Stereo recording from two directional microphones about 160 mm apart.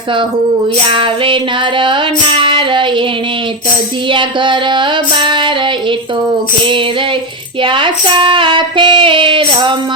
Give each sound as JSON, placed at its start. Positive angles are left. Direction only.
{"t": 0.9, "sound": "female singing", "side_deg": -30}
{"t": 4.1, "sound": "female singing", "side_deg": -30}
{"t": 7.6, "sound": "female singing", "side_deg": -30}